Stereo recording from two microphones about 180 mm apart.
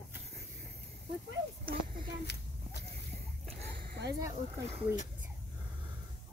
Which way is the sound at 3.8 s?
65° right (ahead or behind).